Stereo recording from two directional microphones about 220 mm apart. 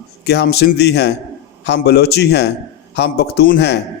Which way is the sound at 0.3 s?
50° left (ahead or behind).